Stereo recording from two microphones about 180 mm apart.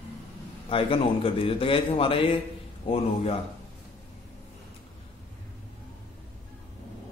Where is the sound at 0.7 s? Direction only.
30° left (ahead or behind).